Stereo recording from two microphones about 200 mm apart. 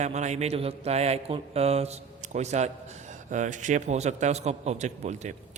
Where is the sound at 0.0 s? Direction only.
35° right (ahead or behind).